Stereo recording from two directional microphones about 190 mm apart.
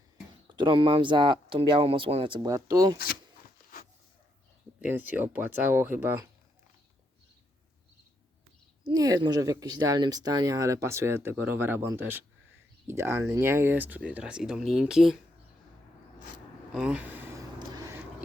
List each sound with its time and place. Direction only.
0.4 s speech: 25° right (ahead or behind)
4.8 s speech: 10° right (ahead or behind)
8.9 s speech: 20° right (ahead or behind); by 15.2 s centre (ahead or behind)
16.7 s a sound: 5° right (ahead or behind)